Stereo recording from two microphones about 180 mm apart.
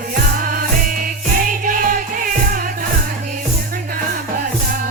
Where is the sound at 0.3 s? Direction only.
50° right (ahead or behind).